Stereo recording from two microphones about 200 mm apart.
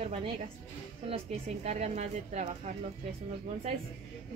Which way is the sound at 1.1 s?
35° right (ahead or behind).